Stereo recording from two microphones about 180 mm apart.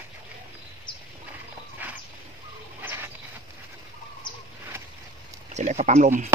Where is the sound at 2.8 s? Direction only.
10° right (ahead or behind).